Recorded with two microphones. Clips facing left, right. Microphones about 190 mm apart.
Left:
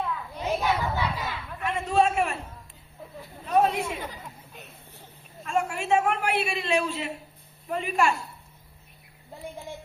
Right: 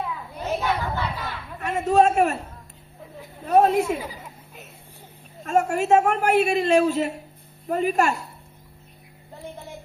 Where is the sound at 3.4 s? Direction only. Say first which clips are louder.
Right 5 dB; 40° right (ahead or behind).